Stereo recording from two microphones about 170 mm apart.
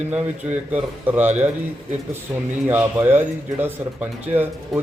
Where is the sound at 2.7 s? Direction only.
10° right (ahead or behind).